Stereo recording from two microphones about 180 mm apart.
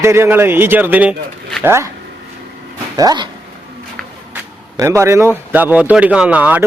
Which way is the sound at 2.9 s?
20° right (ahead or behind).